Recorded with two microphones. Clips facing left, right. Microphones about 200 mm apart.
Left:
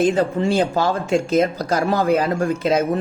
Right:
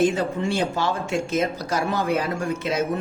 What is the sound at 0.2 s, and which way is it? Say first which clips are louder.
Speech: left 6 dB; 35° left (ahead or behind).